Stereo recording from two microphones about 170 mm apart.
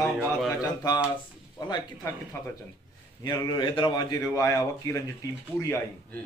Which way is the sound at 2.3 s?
15° left (ahead or behind).